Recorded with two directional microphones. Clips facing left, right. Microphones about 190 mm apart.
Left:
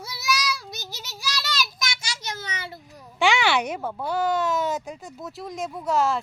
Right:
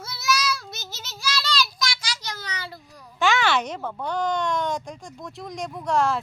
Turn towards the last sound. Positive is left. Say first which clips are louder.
# even
turn(degrees=0)  # may be behind; listen again after turning